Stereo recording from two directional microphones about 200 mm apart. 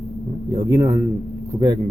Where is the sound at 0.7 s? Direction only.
15° right (ahead or behind).